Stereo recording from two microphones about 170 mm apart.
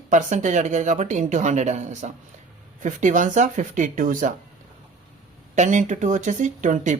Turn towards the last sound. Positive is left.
turn(degrees=-45)  # may be behind; listen again after turning